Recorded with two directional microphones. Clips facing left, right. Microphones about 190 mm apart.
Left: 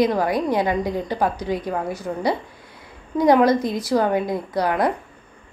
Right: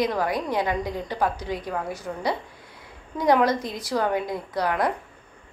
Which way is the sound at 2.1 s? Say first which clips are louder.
Left 5 dB; 30° left (ahead or behind).